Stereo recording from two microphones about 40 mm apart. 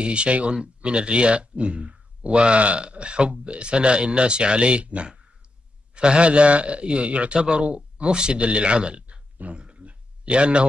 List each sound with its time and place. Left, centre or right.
0.0 s speech: right
7.3 s speech: right
7.6 s speech: right